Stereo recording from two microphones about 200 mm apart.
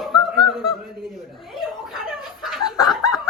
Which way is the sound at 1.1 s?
Centre (ahead or behind).